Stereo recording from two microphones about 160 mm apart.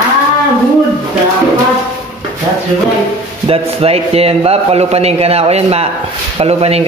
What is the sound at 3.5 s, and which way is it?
A man's voice, 40° right (ahead or behind).